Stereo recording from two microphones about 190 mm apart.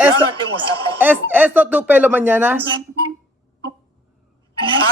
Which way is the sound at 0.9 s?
10° right (ahead or behind).